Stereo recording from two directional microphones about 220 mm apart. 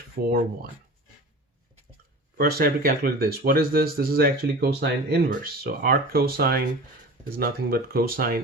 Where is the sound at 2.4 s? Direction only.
45° right (ahead or behind).